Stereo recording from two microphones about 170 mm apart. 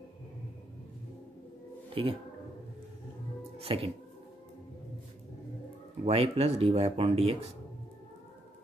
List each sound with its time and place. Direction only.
2.0 s speech: 30° right (ahead or behind)
3.5 s speech: 35° right (ahead or behind)
6.0 s speech: 35° right (ahead or behind)